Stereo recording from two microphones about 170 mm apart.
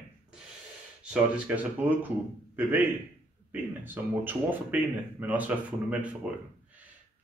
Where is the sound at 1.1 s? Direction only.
5° right (ahead or behind).